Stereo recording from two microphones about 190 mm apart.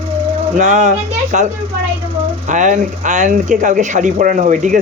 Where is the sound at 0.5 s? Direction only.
40° right (ahead or behind).